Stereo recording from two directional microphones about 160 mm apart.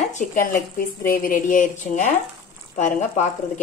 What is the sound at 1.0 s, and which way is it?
A woman's voice, 60° left (ahead or behind).